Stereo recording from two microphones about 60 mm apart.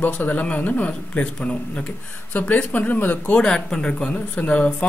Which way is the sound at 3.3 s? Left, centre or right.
Centre.